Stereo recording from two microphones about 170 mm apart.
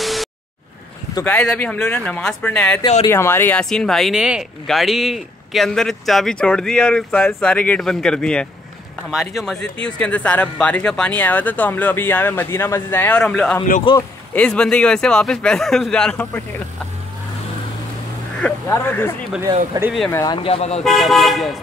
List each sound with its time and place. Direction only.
0.0 s a sound: centre (ahead or behind)
1.2 s speech: 10° left (ahead or behind)
13.9 s speech: 30° left (ahead or behind)
14.3 s speech: 5° left (ahead or behind)
18.4 s speech: 10° left (ahead or behind)
20.4 s speech: 35° left (ahead or behind)
20.8 s speech: centre (ahead or behind)